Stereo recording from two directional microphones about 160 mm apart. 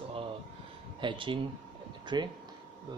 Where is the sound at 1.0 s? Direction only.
30° right (ahead or behind).